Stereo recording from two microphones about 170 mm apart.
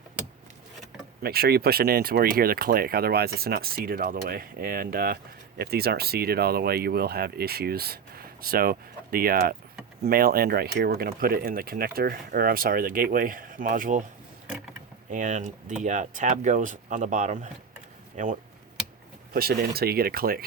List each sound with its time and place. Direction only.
1.2 s speech: 65° right (ahead or behind)
15.1 s speech: 50° right (ahead or behind)
19.3 s speech: 65° right (ahead or behind)